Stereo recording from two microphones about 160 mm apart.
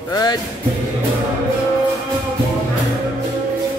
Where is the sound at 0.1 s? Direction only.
25° left (ahead or behind).